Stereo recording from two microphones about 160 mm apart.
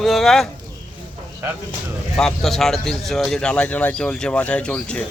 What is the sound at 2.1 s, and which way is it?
Speech, centre (ahead or behind).